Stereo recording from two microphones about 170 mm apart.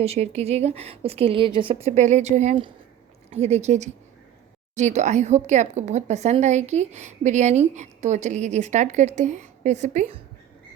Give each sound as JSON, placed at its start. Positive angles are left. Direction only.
{"t": 0.0, "sound": "speech", "side_deg": -40}